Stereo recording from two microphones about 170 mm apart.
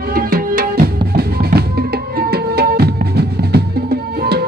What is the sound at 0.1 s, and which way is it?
Drum, 60° right (ahead or behind).